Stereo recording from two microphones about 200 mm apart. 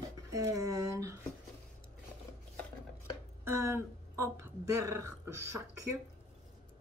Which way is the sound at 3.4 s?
10° right (ahead or behind).